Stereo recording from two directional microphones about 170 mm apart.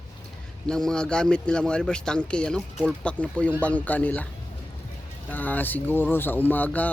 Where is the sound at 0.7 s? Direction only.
5° left (ahead or behind).